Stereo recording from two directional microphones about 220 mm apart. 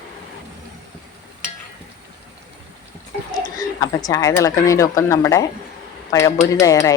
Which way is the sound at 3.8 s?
15° left (ahead or behind).